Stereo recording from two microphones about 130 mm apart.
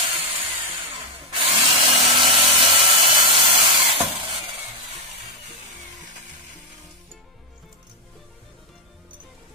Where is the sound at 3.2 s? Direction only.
45° right (ahead or behind).